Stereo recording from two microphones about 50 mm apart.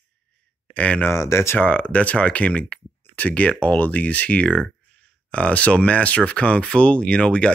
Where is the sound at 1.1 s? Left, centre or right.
Left.